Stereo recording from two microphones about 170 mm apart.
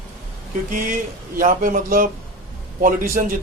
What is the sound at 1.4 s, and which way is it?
A man's voice, 50° right (ahead or behind).